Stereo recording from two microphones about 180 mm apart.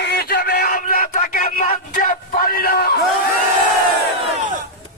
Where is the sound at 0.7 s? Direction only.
50° left (ahead or behind).